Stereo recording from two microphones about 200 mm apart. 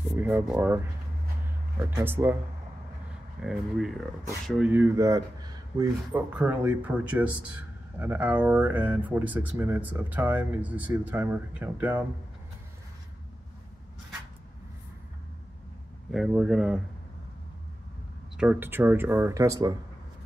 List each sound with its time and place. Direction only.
0.1 s speech: 10° right (ahead or behind)
2.0 s speech: 10° right (ahead or behind)
3.4 s speech: centre (ahead or behind); by 5.9 s 20° right (ahead or behind)
6.1 s speech: 10° right (ahead or behind)
16.1 s speech: centre (ahead or behind)
18.4 s speech: 10° right (ahead or behind)